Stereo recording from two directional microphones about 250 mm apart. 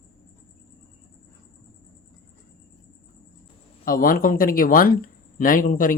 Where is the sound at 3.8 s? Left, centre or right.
Left.